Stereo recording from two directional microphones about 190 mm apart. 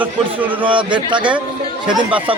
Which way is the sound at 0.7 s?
25° right (ahead or behind).